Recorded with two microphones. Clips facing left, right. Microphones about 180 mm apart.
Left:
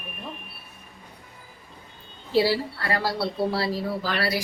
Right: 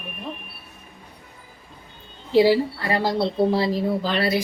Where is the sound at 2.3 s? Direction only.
15° right (ahead or behind).